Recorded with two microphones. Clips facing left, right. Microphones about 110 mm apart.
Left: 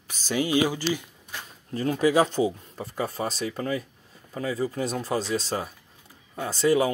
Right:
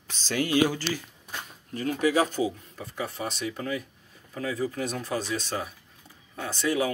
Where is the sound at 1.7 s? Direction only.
30° left (ahead or behind).